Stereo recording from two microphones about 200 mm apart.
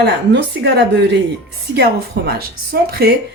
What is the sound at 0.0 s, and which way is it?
Speech, 55° right (ahead or behind).